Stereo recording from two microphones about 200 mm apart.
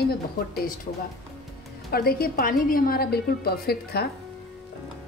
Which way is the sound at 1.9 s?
50° left (ahead or behind).